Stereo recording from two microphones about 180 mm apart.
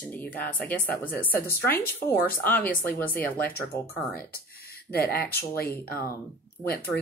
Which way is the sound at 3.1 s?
55° left (ahead or behind).